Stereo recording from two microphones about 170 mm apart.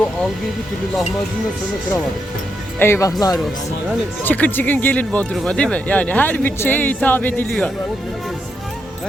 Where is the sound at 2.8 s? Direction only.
15° left (ahead or behind).